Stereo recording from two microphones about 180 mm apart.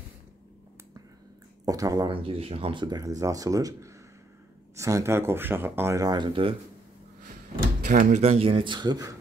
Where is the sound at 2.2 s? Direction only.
30° right (ahead or behind).